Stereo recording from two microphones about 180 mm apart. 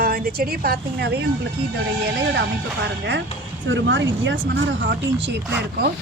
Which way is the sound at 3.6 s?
90° right.